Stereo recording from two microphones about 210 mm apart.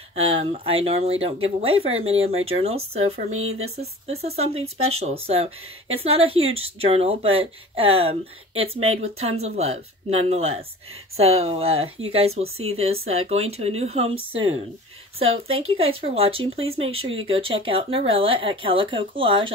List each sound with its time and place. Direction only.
0.1 s a woman's voice: 30° right (ahead or behind)